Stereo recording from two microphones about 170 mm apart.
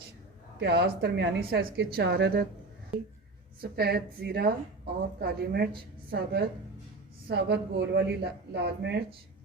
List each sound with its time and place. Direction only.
0.6 s a woman's voice: 70° right (ahead or behind)
3.6 s a woman's voice: 70° right (ahead or behind)